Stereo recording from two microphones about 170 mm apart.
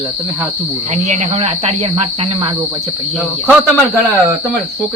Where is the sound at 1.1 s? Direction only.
40° right (ahead or behind).